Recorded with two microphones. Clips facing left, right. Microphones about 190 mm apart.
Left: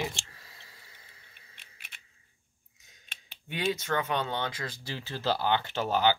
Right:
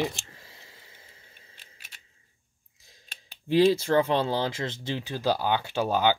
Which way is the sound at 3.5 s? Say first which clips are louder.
Right 10 dB; 30° right (ahead or behind).